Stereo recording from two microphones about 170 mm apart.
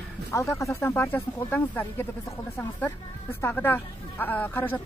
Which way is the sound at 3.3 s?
10° left (ahead or behind).